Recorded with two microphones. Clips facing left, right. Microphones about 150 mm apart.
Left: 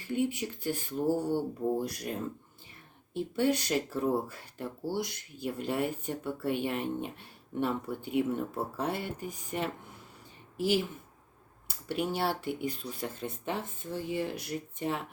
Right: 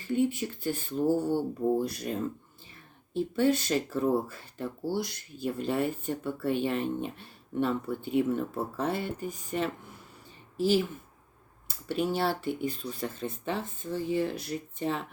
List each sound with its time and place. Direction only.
0.0 s speech: 15° left (ahead or behind)
3.2 s speech: 15° left (ahead or behind)
11.9 s speech: 15° left (ahead or behind)